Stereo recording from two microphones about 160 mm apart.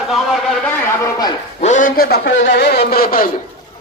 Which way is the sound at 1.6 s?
50° left (ahead or behind).